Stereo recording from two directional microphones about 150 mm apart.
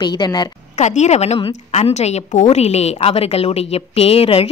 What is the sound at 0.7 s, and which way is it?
A woman's voice, 50° left (ahead or behind).